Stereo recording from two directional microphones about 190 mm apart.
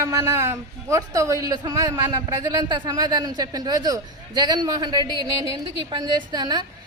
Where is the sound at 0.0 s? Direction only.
15° right (ahead or behind).